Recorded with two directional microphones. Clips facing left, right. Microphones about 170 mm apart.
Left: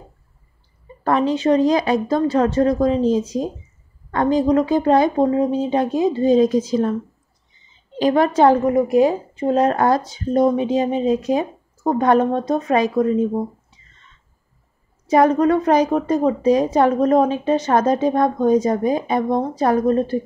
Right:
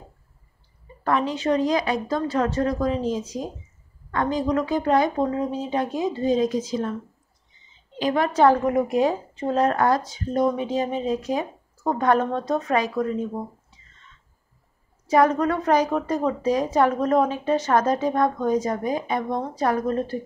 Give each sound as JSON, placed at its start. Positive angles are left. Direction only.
{"t": 1.0, "sound": "a woman's voice", "side_deg": 30}
{"t": 8.0, "sound": "a woman's voice", "side_deg": 35}
{"t": 8.6, "sound": "a woman's voice", "side_deg": 0}
{"t": 15.0, "sound": "a woman's voice", "side_deg": 20}